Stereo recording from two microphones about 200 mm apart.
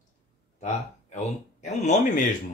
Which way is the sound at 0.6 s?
35° left (ahead or behind).